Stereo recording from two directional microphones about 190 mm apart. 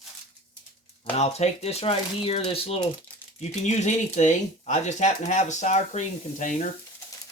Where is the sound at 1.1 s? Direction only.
35° left (ahead or behind).